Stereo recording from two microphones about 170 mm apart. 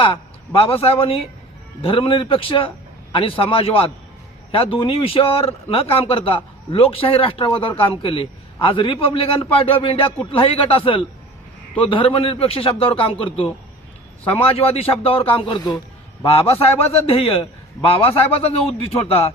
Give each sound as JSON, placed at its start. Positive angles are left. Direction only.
{"t": 0.0, "sound": "a man's voice", "side_deg": 35}